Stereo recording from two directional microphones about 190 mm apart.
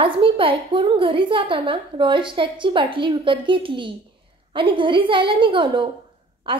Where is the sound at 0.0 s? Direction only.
25° right (ahead or behind).